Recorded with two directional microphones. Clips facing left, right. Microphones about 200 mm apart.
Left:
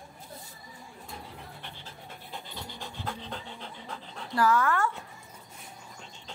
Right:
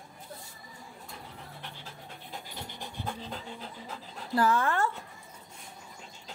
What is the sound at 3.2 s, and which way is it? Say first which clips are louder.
Speech: even; 5° right (ahead or behind).